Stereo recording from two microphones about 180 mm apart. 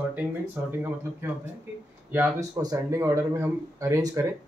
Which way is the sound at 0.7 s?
10° right (ahead or behind).